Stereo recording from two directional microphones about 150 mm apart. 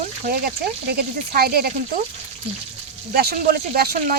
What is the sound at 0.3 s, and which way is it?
Speech, 85° right.